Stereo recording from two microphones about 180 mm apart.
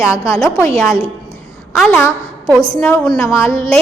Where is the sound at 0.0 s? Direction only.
15° left (ahead or behind).